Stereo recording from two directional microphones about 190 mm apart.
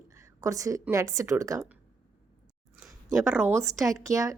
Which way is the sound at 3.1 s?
10° right (ahead or behind).